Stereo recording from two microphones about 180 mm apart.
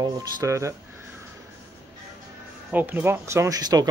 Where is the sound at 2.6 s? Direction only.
10° right (ahead or behind).